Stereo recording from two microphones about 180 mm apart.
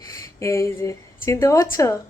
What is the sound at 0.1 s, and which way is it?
A woman's voice, 15° left (ahead or behind).